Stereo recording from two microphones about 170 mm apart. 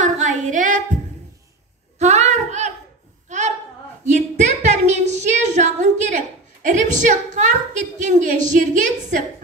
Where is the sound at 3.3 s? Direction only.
45° right (ahead or behind).